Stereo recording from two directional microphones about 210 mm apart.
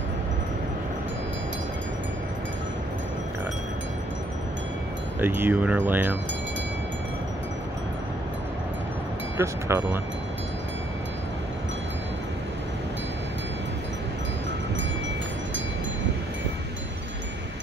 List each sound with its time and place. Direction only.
5.2 s speech: 10° right (ahead or behind)
9.4 s speech: 10° right (ahead or behind)